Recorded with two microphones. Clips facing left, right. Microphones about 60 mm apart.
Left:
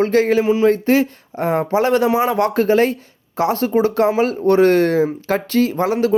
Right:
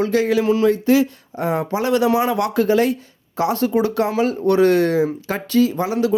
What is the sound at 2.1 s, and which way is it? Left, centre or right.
Speech, left.